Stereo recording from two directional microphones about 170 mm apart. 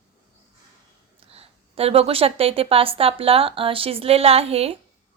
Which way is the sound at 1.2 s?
35° right (ahead or behind).